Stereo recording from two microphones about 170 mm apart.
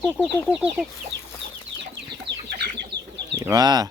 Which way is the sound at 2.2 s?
80° right.